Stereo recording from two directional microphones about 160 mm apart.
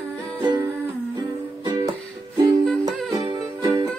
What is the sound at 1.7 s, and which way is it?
Music, 20° right (ahead or behind).